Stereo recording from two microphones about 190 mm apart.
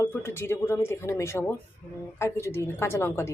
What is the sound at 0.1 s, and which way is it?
Speech, 10° left (ahead or behind).